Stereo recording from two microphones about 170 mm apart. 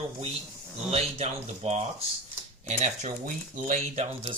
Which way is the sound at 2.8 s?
45° right (ahead or behind).